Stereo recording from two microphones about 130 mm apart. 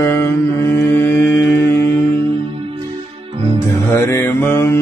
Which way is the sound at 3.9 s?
20° left (ahead or behind).